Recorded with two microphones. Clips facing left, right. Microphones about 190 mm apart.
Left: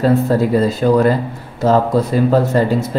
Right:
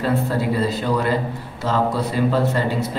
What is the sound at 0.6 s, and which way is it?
A man's voice, 45° left (ahead or behind).